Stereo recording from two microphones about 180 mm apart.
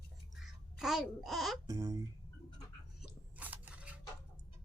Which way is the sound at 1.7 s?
20° right (ahead or behind).